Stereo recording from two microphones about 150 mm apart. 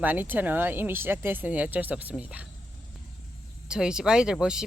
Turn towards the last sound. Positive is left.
turn(degrees=-5)  # may be behind; listen again after turning